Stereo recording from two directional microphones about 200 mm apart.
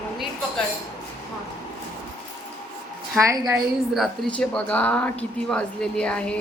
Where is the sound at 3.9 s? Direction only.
Centre (ahead or behind).